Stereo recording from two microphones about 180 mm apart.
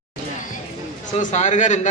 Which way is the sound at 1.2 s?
45° left (ahead or behind).